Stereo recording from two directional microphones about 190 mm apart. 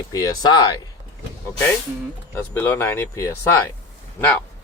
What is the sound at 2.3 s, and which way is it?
Speech, 10° left (ahead or behind).